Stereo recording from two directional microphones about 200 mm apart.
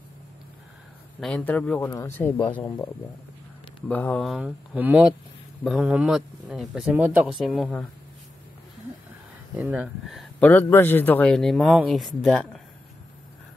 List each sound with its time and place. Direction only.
1.2 s speech: 5° left (ahead or behind)
3.9 s speech: 5° left (ahead or behind)
9.6 s speech: 5° right (ahead or behind)
10.5 s speech: 10° left (ahead or behind)